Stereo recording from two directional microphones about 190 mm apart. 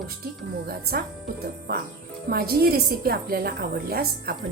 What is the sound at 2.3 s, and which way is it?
A woman's voice, 50° right (ahead or behind).